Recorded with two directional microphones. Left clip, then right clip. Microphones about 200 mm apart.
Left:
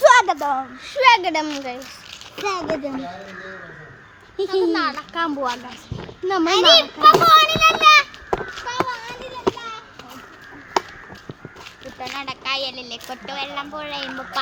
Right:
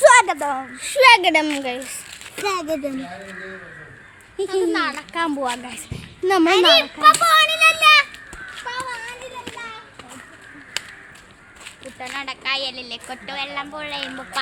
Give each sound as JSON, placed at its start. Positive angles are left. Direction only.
{"t": 0.0, "sound": "a sound", "side_deg": -5}
{"t": 0.8, "sound": "speech", "side_deg": -60}
{"t": 2.3, "sound": "speech", "side_deg": -25}
{"t": 4.4, "sound": "a woman's voice", "side_deg": 10}
{"t": 4.7, "sound": "speech", "side_deg": -25}
{"t": 5.6, "sound": "speech", "side_deg": -40}
{"t": 6.4, "sound": "a child's voice", "side_deg": 0}
{"t": 7.7, "sound": "a sound", "side_deg": -25}
{"t": 9.0, "sound": "a sound", "side_deg": 5}
{"t": 11.9, "sound": "a woman's voice", "side_deg": 10}